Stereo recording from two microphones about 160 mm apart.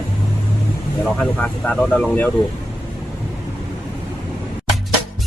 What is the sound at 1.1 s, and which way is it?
Speech, 10° left (ahead or behind).